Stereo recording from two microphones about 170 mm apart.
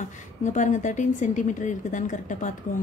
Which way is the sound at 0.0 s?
45° left (ahead or behind).